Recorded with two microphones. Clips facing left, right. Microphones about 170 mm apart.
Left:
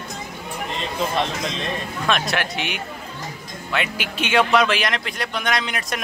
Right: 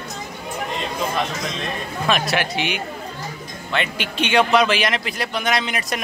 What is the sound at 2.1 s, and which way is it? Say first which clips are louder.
A man's voice: right 2 dB; centre (ahead or behind).